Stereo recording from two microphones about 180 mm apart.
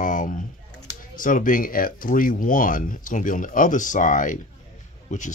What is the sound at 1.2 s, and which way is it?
Speech, 50° left (ahead or behind).